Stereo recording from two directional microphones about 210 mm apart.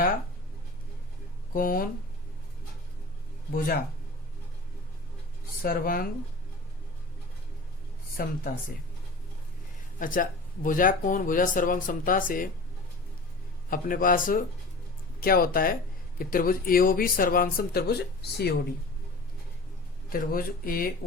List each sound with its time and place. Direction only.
1.5 s speech: 40° left (ahead or behind)
5.6 s speech: 40° left (ahead or behind)
8.1 s speech: 45° left (ahead or behind)
10.0 s speech: 40° left (ahead or behind)
13.7 s speech: 40° left (ahead or behind)
20.1 s speech: 40° left (ahead or behind)